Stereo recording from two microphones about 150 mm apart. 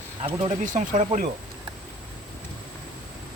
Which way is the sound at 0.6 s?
60° right (ahead or behind).